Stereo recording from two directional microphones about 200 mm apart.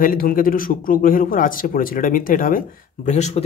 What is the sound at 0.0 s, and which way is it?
Speech, 45° left (ahead or behind).